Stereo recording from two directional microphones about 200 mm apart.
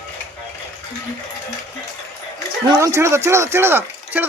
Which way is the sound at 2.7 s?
15° right (ahead or behind).